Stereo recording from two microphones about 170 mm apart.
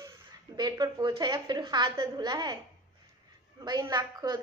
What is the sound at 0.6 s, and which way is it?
A woman's voice, 25° right (ahead or behind).